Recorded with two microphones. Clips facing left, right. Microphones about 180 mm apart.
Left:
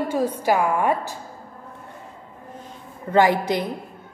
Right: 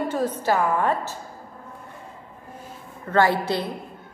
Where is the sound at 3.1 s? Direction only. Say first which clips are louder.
Left 2 dB; 15° left (ahead or behind).